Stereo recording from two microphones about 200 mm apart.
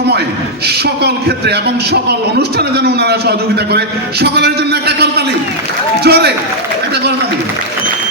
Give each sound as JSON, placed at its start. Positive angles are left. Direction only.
{"t": 1.0, "sound": "a man's voice", "side_deg": -55}